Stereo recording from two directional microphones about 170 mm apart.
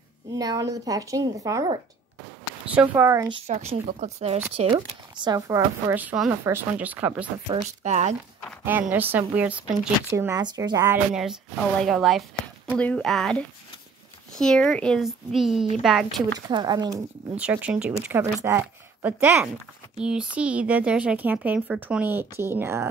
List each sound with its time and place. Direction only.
0.4 s speech: 20° right (ahead or behind)
2.6 s speech: 10° right (ahead or behind)
3.3 s speech: 40° right (ahead or behind); by 7.5 s 10° right (ahead or behind)
7.5 s speech: 40° right (ahead or behind)
8.6 s speech: 10° right (ahead or behind)
11.8 s speech: centre (ahead or behind)
16.4 s speech: 25° right (ahead or behind)
17.4 s speech: 10° right (ahead or behind)